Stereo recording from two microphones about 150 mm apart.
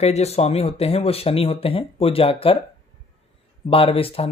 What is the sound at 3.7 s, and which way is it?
Speech, 40° left (ahead or behind).